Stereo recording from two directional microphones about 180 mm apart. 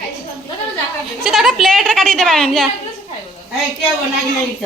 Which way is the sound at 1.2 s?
Centre (ahead or behind).